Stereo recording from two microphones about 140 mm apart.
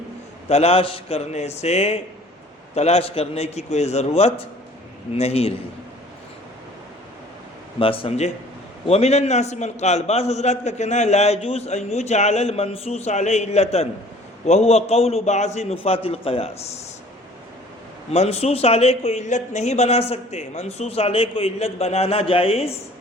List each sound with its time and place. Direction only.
0.4 s a man's voice: 45° left (ahead or behind)
7.8 s a man's voice: 40° left (ahead or behind)
18.1 s a man's voice: 50° left (ahead or behind)